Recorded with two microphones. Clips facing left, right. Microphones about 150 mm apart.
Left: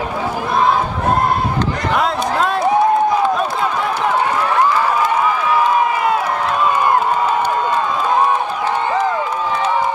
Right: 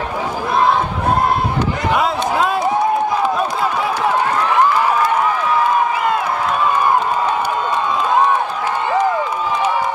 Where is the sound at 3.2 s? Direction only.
5° right (ahead or behind).